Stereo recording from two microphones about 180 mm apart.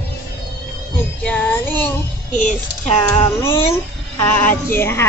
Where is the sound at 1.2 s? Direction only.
10° left (ahead or behind).